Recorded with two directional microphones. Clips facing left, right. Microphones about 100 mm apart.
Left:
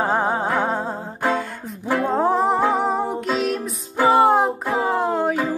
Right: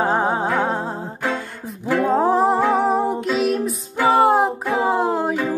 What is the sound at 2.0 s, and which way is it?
Music, centre (ahead or behind).